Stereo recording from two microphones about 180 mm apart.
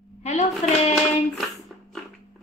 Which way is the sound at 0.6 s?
40° left (ahead or behind).